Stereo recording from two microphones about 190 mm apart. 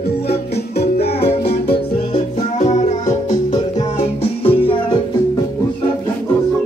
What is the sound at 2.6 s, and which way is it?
Music, 35° left (ahead or behind).